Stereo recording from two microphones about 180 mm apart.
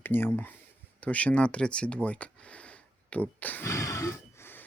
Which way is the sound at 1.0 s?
10° left (ahead or behind).